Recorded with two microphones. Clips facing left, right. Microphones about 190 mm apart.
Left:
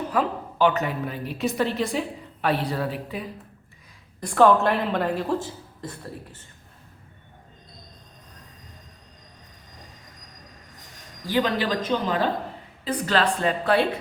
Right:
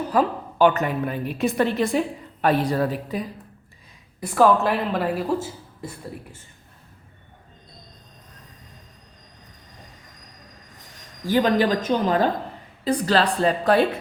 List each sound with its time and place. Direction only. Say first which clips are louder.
0.1 s a woman's voice: right 6 dB; 45° right (ahead or behind)
4.2 s a woman's voice: even; 5° right (ahead or behind)
11.3 s a woman's voice: right 4 dB; 45° right (ahead or behind)